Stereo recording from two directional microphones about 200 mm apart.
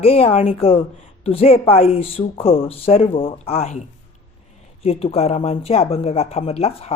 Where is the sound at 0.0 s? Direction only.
30° left (ahead or behind).